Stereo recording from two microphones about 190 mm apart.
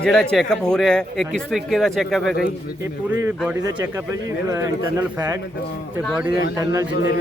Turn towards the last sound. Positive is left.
turn(degrees=65)  # may be behind; listen again after turning